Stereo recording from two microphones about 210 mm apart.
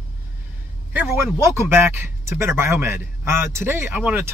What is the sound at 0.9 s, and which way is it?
Speech, 10° right (ahead or behind).